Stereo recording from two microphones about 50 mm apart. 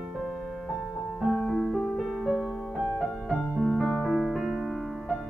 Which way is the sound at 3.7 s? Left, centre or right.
Centre.